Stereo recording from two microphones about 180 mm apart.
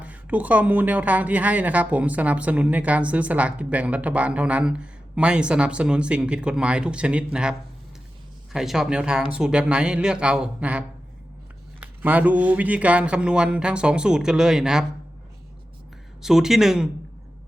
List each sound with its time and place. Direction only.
0.0 s speech: 10° right (ahead or behind)
8.5 s speech: centre (ahead or behind)
16.2 s speech: centre (ahead or behind)